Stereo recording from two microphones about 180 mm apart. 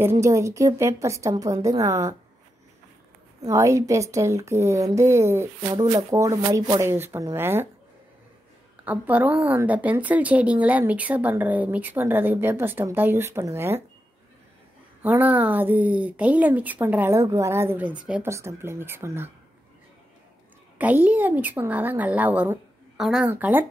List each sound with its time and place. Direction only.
0.0 s a woman's voice: 15° right (ahead or behind)
3.3 s a woman's voice: 15° right (ahead or behind)
8.8 s a woman's voice: 10° right (ahead or behind)
15.0 s a woman's voice: 10° right (ahead or behind)
20.7 s a woman's voice: 10° right (ahead or behind)